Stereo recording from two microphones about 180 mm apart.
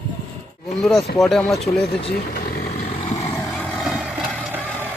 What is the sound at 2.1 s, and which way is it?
Vehicle, 60° left (ahead or behind).